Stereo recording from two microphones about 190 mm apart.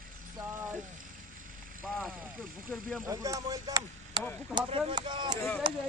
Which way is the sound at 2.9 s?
15° right (ahead or behind).